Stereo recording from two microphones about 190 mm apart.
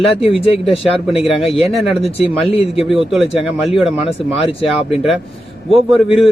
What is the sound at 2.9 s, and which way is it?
A man's voice, centre (ahead or behind).